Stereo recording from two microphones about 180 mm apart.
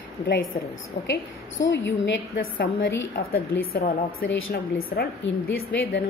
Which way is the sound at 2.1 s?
65° left (ahead or behind).